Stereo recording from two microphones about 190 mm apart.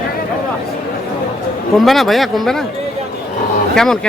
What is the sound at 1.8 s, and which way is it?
Speech, centre (ahead or behind).